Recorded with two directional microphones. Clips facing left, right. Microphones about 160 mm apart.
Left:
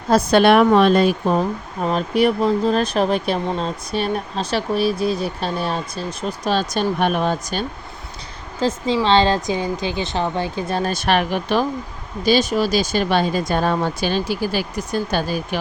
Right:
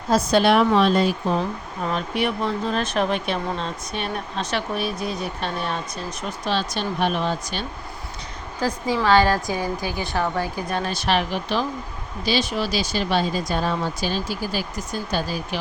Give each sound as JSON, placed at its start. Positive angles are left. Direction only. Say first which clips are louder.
{"t": 0.1, "sound": "speech", "louder": "left 4 dB", "side_deg": 60}
{"t": 1.4, "sound": "speech", "louder": "left 4 dB", "side_deg": 35}
{"t": 6.5, "sound": "speech", "louder": "left 5 dB", "side_deg": 45}
{"t": 8.5, "sound": "a woman's voice", "louder": "left 4 dB", "side_deg": 25}
{"t": 10.8, "sound": "speech", "louder": "left 3 dB", "side_deg": 45}